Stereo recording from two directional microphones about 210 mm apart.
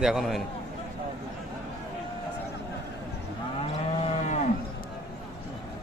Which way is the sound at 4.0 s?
30° left (ahead or behind).